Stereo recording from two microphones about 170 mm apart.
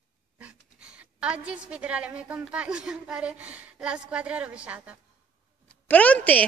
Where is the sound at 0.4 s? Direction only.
5° right (ahead or behind).